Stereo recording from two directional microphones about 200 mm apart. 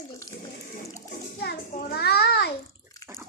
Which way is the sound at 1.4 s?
55° left (ahead or behind).